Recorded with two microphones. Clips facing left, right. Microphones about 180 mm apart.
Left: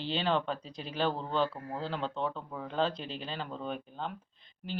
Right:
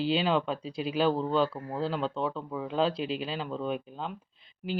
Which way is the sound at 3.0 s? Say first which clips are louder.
Right 9 dB; 90° right.